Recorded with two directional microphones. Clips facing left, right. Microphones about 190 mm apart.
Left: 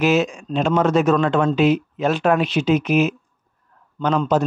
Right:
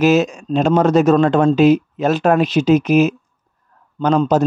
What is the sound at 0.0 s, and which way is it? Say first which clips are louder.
Speech: right 4 dB; 40° right (ahead or behind).